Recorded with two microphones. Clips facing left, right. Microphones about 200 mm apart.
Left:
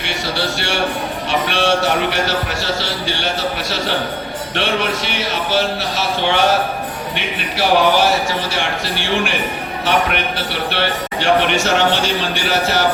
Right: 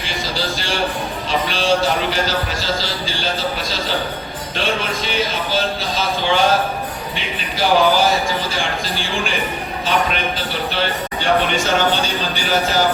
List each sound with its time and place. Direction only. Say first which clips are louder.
0.0 s a man's voice: left 2 dB; 70° left (ahead or behind)